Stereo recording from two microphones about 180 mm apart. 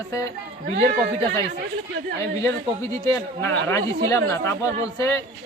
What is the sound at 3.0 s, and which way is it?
Speech, 15° left (ahead or behind).